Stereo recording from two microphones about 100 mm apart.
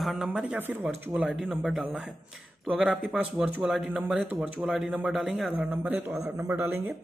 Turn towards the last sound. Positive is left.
turn(degrees=-20)  # may be behind; listen again after turning